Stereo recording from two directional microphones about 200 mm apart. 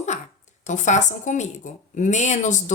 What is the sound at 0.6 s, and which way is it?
A woman's voice, 35° left (ahead or behind).